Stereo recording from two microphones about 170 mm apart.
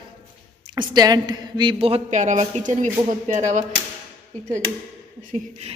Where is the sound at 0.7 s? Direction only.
25° right (ahead or behind); by 3.5 s 45° right (ahead or behind).